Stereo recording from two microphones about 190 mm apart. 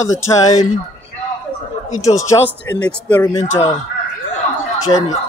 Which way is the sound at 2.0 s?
15° left (ahead or behind).